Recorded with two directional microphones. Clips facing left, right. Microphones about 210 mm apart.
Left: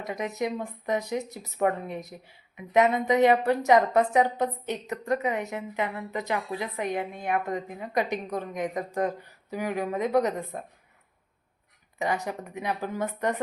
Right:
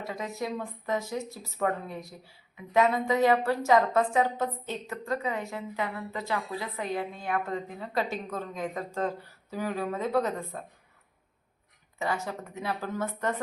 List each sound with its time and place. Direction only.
0.0 s a woman's voice: 20° left (ahead or behind)
11.9 s speech: 15° left (ahead or behind)